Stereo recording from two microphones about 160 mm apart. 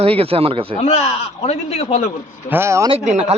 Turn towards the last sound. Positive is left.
turn(degrees=-45)  # may be behind; listen again after turning